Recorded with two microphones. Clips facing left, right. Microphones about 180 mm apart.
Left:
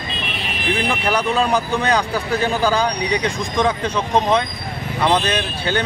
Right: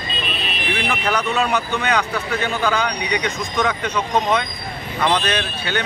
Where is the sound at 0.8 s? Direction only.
30° left (ahead or behind).